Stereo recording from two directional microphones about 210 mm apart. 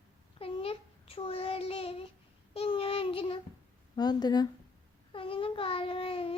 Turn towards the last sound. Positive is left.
turn(degrees=25)  # may be behind; listen again after turning